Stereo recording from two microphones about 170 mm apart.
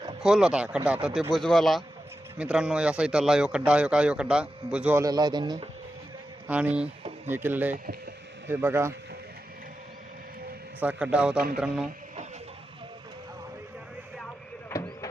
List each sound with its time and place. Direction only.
0.2 s a man's voice: 5° right (ahead or behind)
5.0 s speech: 25° right (ahead or behind)
6.5 s a man's voice: 10° right (ahead or behind)
10.8 s a man's voice: 10° right (ahead or behind)
14.7 s a sound: 15° left (ahead or behind)